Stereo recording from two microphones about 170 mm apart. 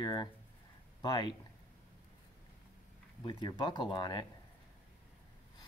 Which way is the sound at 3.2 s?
25° left (ahead or behind).